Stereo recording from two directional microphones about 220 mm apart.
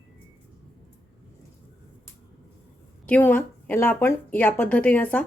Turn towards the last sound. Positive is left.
turn(degrees=5)  # may be behind; listen again after turning